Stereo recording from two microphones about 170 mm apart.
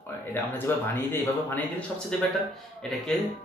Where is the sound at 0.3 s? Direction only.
10° left (ahead or behind).